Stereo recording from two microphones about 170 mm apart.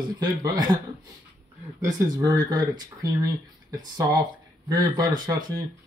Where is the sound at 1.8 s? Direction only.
20° right (ahead or behind).